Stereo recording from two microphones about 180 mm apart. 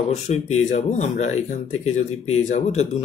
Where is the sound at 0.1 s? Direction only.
40° left (ahead or behind).